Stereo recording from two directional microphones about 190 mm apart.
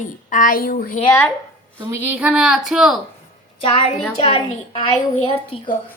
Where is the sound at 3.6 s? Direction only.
30° left (ahead or behind).